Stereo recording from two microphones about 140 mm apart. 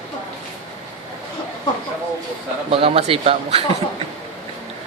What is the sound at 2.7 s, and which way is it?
Speech, 45° right (ahead or behind).